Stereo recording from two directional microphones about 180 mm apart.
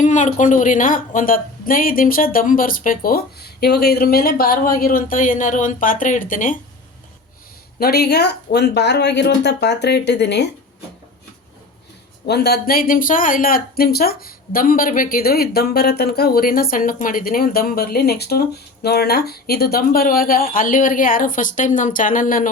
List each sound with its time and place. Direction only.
0.0 s speech: 45° left (ahead or behind)
7.8 s speech: 60° left (ahead or behind)
12.2 s speech: 65° left (ahead or behind); by 22.4 s 50° left (ahead or behind)